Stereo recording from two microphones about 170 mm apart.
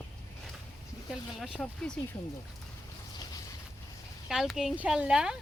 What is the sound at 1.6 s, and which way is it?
Speech, 5° left (ahead or behind).